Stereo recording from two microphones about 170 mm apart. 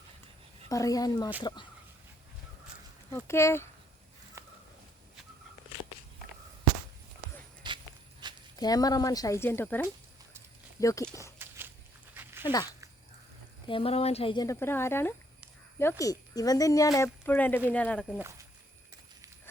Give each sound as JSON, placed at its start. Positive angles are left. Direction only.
{"t": 0.7, "sound": "speech", "side_deg": 20}
{"t": 3.2, "sound": "speech", "side_deg": 15}
{"t": 4.4, "sound": "a sound", "side_deg": -15}
{"t": 7.6, "sound": "walk", "side_deg": -25}
{"t": 8.2, "sound": "a sound", "side_deg": -25}
{"t": 8.5, "sound": "speech", "side_deg": 20}
{"t": 11.3, "sound": "walk", "side_deg": -15}
{"t": 12.1, "sound": "dog", "side_deg": -10}
{"t": 13.7, "sound": "speech", "side_deg": 35}
{"t": 14.4, "sound": "speech", "side_deg": 15}